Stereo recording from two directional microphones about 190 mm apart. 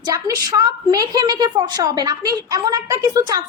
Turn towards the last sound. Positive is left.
turn(degrees=-20)  # may be behind; listen again after turning